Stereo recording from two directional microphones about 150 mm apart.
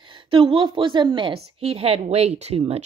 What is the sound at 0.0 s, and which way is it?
A woman's voice, 35° right (ahead or behind).